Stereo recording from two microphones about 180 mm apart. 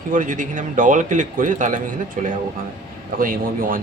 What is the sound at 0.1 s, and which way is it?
A man's voice, 45° right (ahead or behind).